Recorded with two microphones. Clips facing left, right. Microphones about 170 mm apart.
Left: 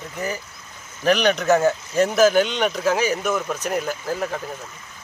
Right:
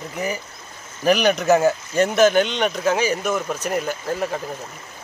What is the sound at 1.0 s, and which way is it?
Speech, 5° right (ahead or behind).